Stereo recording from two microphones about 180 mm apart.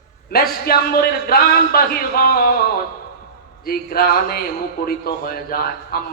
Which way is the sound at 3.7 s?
55° left (ahead or behind).